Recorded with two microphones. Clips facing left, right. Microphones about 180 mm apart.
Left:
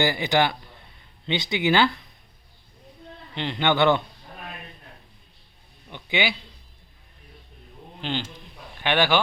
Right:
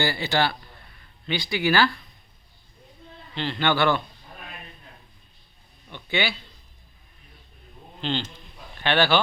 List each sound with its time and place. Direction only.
0.0 s a man's voice: 15° left (ahead or behind)
3.3 s a man's voice: 15° left (ahead or behind)
5.9 s speech: 15° left (ahead or behind)
8.0 s a man's voice: 10° left (ahead or behind)